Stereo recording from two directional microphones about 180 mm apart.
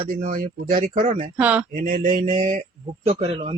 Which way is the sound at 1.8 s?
50° right (ahead or behind).